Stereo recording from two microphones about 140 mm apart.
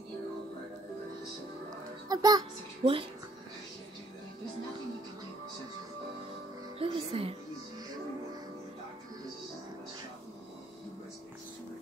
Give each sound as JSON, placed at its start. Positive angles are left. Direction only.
{"t": 2.0, "sound": "a child's voice", "side_deg": -30}
{"t": 2.8, "sound": "speech", "side_deg": -40}
{"t": 6.8, "sound": "music", "side_deg": -45}